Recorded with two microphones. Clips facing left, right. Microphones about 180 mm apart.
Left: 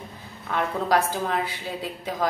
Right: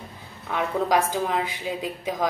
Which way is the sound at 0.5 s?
15° right (ahead or behind).